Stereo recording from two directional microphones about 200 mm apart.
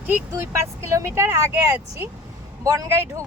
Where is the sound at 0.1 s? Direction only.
15° right (ahead or behind).